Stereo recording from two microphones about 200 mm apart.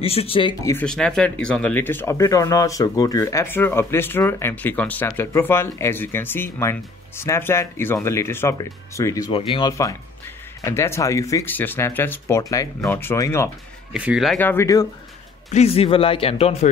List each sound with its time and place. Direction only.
0.0 s a man's voice: 30° left (ahead or behind)
0.8 s speech: 5° left (ahead or behind)
13.9 s speech: 5° right (ahead or behind); by 14.9 s 15° left (ahead or behind)
15.5 s a man's voice: 30° left (ahead or behind)